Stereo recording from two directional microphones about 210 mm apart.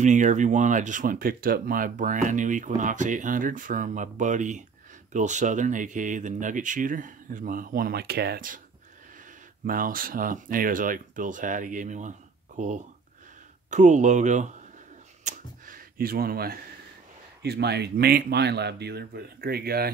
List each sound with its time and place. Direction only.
0.0 s speech: 35° right (ahead or behind)
9.7 s speech: 40° right (ahead or behind)
15.2 s a sound: 40° right (ahead or behind)
17.4 s speech: 50° right (ahead or behind)